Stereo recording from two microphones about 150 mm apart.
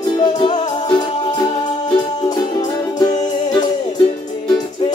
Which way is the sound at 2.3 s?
25° left (ahead or behind).